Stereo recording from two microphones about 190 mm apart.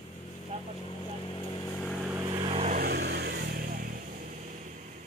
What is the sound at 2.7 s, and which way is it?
Vehicle, 55° right (ahead or behind).